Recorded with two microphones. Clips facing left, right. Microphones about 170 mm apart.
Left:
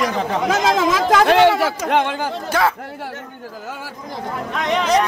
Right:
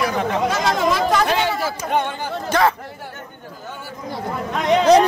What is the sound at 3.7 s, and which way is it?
Speech, 90° left.